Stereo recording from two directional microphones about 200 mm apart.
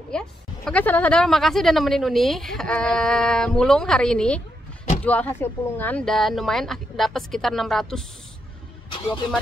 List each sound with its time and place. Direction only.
0.1 s speech: 5° left (ahead or behind)
8.9 s speech: 25° left (ahead or behind)